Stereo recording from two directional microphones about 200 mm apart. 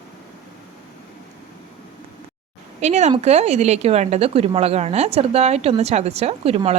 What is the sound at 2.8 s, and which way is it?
Speech, 35° right (ahead or behind).